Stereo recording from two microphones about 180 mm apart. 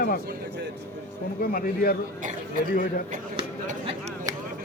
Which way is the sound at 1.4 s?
55° left (ahead or behind).